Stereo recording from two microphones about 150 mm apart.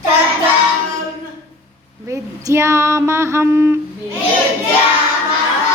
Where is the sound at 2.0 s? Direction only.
20° right (ahead or behind).